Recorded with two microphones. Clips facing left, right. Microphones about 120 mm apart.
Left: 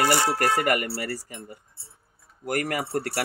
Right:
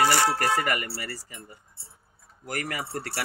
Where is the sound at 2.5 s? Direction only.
50° left (ahead or behind).